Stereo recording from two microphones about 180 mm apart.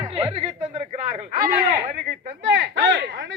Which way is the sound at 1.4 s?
65° right (ahead or behind).